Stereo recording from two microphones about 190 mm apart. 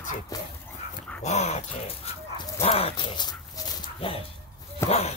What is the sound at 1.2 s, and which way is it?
Dog, 35° left (ahead or behind).